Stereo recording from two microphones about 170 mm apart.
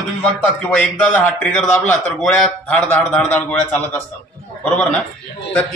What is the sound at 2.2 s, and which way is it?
Speech, 5° left (ahead or behind).